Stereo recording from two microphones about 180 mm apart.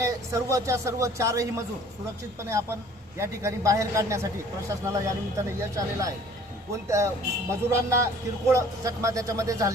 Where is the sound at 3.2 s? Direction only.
15° right (ahead or behind).